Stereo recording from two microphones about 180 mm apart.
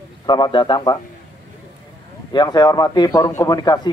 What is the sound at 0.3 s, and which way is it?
Speech, 25° left (ahead or behind).